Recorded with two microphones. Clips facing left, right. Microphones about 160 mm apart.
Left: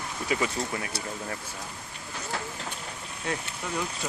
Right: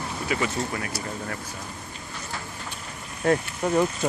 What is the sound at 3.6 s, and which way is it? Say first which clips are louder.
Speech: right 11 dB; 50° right (ahead or behind).